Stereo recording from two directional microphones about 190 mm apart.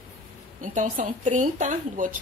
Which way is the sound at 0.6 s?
45° right (ahead or behind).